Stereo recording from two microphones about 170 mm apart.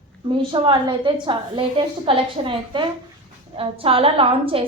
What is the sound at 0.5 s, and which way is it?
A woman's voice, 30° right (ahead or behind).